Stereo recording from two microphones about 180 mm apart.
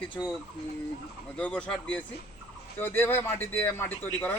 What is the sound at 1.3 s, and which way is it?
A man's voice, 5° left (ahead or behind).